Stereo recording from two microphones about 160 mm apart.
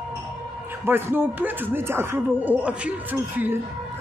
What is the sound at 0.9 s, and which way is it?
Speech, 15° right (ahead or behind).